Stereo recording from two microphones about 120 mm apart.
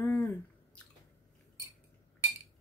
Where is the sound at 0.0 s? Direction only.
20° left (ahead or behind).